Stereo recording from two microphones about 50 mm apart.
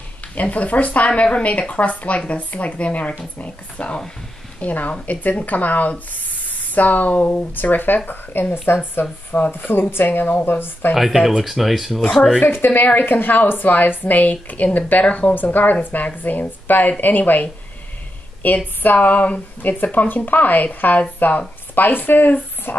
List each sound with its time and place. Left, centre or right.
0.4 s a woman's voice: left
11.0 s speech: centre
12.4 s a woman's voice: left
18.9 s a woman's voice: left